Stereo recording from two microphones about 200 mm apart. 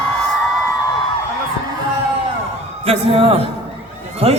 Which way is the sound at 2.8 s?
30° right (ahead or behind).